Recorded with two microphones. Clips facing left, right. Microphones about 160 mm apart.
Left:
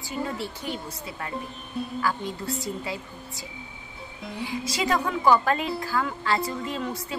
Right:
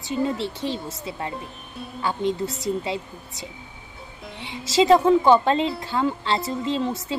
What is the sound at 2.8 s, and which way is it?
A woman's voice, 25° right (ahead or behind).